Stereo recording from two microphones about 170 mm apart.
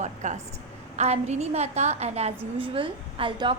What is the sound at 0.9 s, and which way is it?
A woman's voice, 40° right (ahead or behind).